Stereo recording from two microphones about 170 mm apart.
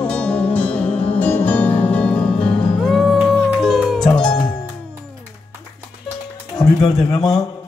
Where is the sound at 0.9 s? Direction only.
35° left (ahead or behind).